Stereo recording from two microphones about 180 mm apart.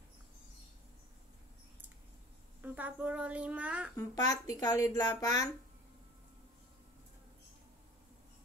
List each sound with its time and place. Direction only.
2.6 s a woman's voice: 10° right (ahead or behind)
4.3 s speech: 20° left (ahead or behind)